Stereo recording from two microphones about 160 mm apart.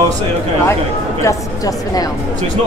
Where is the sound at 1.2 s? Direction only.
20° left (ahead or behind).